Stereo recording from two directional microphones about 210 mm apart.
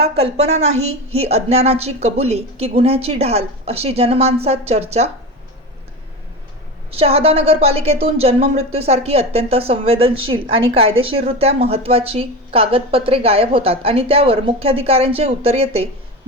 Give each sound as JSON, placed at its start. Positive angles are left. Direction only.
{"t": 0.0, "sound": "a woman's voice", "side_deg": -30}
{"t": 6.9, "sound": "a woman's voice", "side_deg": -30}